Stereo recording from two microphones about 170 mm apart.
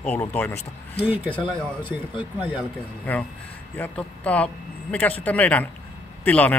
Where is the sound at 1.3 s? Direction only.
30° left (ahead or behind).